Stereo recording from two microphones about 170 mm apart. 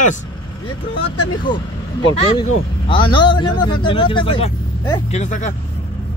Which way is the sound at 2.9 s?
30° left (ahead or behind).